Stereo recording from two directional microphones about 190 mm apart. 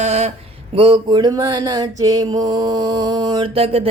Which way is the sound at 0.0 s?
35° right (ahead or behind).